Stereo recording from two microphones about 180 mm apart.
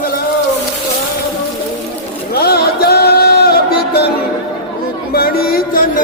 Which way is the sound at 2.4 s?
60° left (ahead or behind).